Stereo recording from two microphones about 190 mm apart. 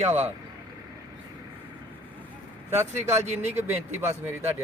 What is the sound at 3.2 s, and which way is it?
Speech, 35° right (ahead or behind).